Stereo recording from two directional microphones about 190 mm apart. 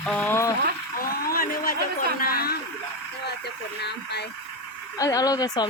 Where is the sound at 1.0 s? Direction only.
50° left (ahead or behind).